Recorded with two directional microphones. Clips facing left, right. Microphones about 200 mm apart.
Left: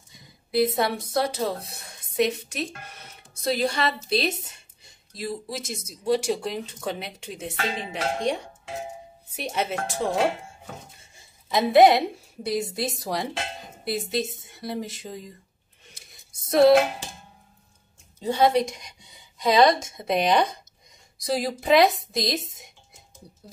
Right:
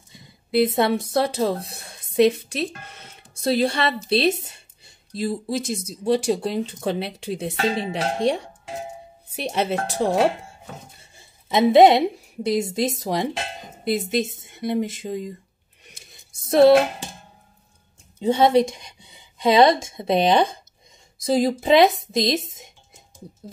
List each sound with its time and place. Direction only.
0.1 s a sound: 25° right (ahead or behind)
1.1 s a woman's voice: 25° right (ahead or behind)
11.1 s a sound: 25° right (ahead or behind)
12.4 s a woman's voice: 20° right (ahead or behind)
16.4 s speech: 25° right (ahead or behind)
18.2 s a woman's voice: 25° right (ahead or behind)